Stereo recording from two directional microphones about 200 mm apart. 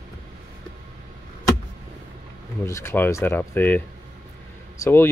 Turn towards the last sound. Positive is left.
turn(degrees=10)  # may be behind; listen again after turning